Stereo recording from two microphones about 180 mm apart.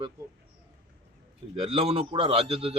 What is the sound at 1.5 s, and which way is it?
A man's voice, 30° right (ahead or behind).